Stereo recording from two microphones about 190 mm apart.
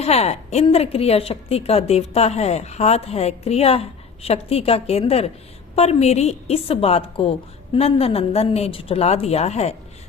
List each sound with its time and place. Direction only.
0.0 s a woman's voice: 35° left (ahead or behind)